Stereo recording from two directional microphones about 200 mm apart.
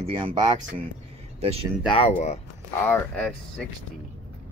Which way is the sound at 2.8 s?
5° left (ahead or behind).